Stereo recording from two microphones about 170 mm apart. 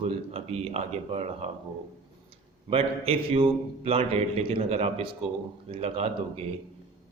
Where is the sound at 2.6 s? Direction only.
35° right (ahead or behind).